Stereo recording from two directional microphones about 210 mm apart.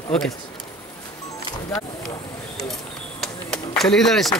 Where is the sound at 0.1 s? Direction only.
Centre (ahead or behind).